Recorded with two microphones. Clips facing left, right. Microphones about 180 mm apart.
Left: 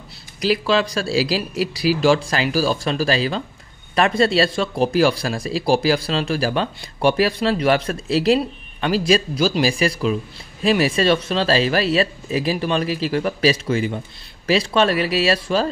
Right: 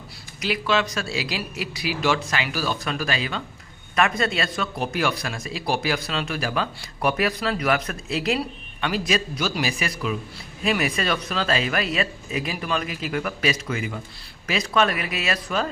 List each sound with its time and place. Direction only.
0.4 s speech: 35° left (ahead or behind)